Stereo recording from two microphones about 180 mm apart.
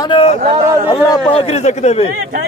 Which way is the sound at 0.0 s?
30° left (ahead or behind).